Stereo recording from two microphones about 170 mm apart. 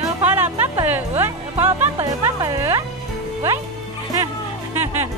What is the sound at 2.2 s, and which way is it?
Speech, 15° right (ahead or behind).